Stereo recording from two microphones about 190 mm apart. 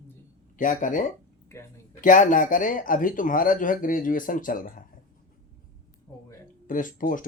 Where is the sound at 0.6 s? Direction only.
45° left (ahead or behind).